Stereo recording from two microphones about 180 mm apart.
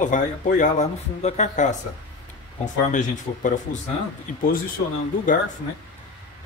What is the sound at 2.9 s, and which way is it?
Speech, 45° left (ahead or behind).